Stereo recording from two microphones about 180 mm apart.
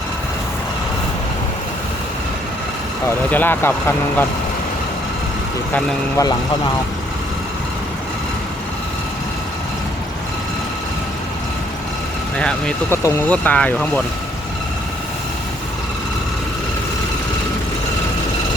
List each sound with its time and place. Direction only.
3.2 s speech: 10° left (ahead or behind)
5.7 s speech: 15° left (ahead or behind)
12.4 s speech: 5° left (ahead or behind)
13.0 s speech: 15° left (ahead or behind)